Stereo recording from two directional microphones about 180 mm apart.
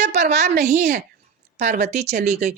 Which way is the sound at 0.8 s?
65° right (ahead or behind).